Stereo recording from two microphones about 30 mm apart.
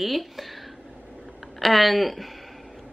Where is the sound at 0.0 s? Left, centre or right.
Centre.